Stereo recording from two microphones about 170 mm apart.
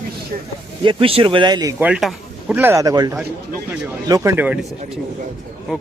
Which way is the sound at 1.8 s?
5° right (ahead or behind).